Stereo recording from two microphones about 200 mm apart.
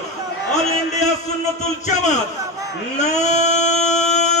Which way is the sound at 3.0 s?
35° left (ahead or behind).